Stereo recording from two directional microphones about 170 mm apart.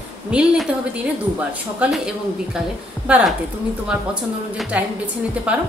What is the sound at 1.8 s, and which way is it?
A woman's voice, 5° right (ahead or behind).